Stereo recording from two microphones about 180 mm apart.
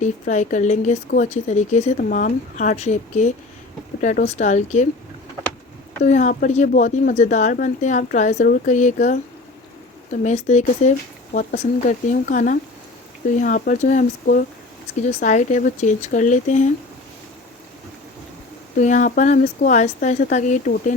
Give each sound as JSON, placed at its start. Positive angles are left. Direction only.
{"t": 0.0, "sound": "speech", "side_deg": 40}
{"t": 6.1, "sound": "speech", "side_deg": 45}
{"t": 18.8, "sound": "speech", "side_deg": 45}